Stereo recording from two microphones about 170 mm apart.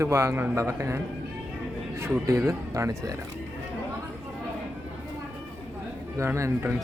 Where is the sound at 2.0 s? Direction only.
15° right (ahead or behind).